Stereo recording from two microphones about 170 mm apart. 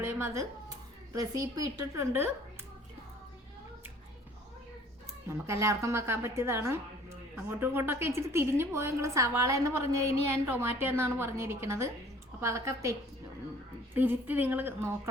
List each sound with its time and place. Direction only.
0.0 s a woman's voice: 15° right (ahead or behind)
5.3 s a woman's voice: 15° right (ahead or behind)